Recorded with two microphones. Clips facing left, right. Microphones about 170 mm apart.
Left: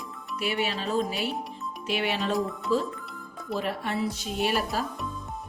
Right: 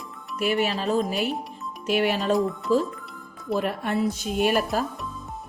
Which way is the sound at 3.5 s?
50° right (ahead or behind).